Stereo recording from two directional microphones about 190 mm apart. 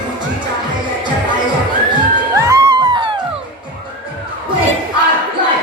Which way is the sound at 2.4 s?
20° right (ahead or behind).